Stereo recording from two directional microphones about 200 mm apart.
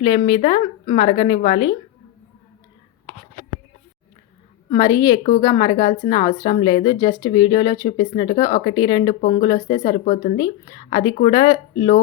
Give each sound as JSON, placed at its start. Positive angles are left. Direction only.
{"t": 0.0, "sound": "speech", "side_deg": 25}
{"t": 4.7, "sound": "speech", "side_deg": 20}